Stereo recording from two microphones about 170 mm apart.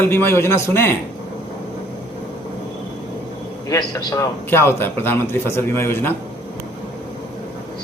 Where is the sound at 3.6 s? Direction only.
20° left (ahead or behind).